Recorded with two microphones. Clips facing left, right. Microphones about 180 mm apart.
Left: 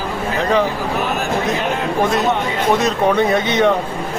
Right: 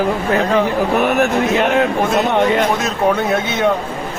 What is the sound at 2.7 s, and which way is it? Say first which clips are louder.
Speech: left 1 dB; 5° right (ahead or behind).